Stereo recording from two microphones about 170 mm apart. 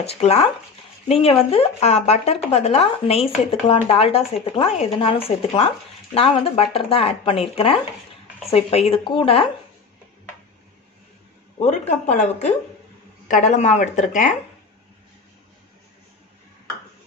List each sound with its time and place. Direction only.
0.0 s speech: 40° left (ahead or behind)
11.6 s speech: 45° left (ahead or behind)